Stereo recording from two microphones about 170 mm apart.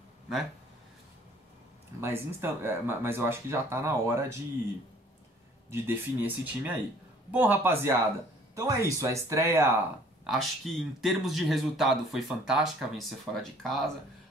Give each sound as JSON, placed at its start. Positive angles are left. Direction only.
{"t": 2.0, "sound": "speech", "side_deg": -15}
{"t": 5.7, "sound": "speech", "side_deg": -10}
{"t": 10.2, "sound": "speech", "side_deg": 0}